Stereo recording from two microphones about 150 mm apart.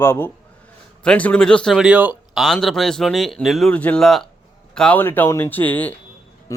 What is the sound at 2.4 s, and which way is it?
Speech, centre (ahead or behind).